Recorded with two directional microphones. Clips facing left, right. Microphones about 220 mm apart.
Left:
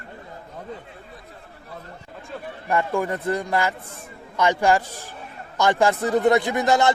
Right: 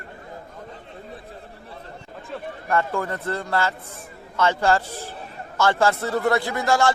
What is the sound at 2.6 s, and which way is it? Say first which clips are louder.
A man's voice: left 1 dB; 15° left (ahead or behind).